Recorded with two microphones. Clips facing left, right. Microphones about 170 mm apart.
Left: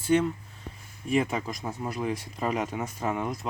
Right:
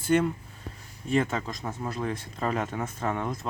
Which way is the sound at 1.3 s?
15° left (ahead or behind).